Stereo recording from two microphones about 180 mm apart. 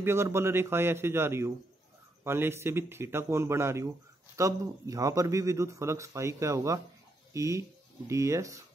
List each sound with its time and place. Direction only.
0.0 s speech: 15° right (ahead or behind)